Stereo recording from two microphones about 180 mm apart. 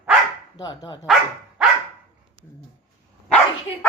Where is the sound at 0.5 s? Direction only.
25° left (ahead or behind).